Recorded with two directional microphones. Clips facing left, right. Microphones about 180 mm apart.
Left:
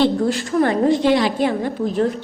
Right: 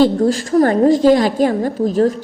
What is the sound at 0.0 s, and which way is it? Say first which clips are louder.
A woman's voice: right 4 dB; 45° right (ahead or behind).